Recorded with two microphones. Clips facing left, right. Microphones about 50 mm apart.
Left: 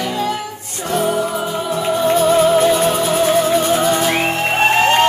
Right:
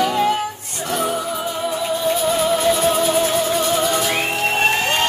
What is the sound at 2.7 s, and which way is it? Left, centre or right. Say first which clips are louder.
Music: left 2 dB; left.